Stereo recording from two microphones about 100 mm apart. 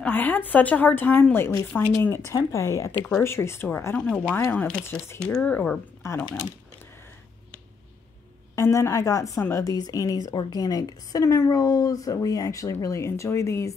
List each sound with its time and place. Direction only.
0.0 s a woman's voice: 15° left (ahead or behind)
3.9 s a woman's voice: 15° left (ahead or behind)
6.0 s speech: 25° left (ahead or behind)
8.5 s speech: 30° left (ahead or behind)
9.8 s speech: 40° left (ahead or behind)